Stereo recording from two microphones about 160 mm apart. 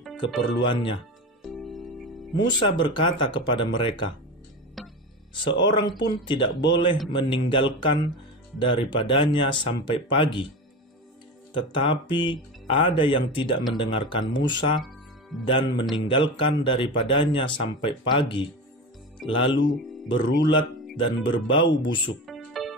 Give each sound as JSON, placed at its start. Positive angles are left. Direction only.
{"t": 0.2, "sound": "speech", "side_deg": 30}
{"t": 1.4, "sound": "music", "side_deg": 0}
{"t": 2.3, "sound": "speech", "side_deg": 30}
{"t": 4.8, "sound": "music", "side_deg": 0}
{"t": 5.4, "sound": "speech", "side_deg": 30}
{"t": 11.5, "sound": "speech", "side_deg": 30}
{"t": 14.8, "sound": "music", "side_deg": 0}
{"t": 16.1, "sound": "speech", "side_deg": 30}
{"t": 22.2, "sound": "music", "side_deg": 0}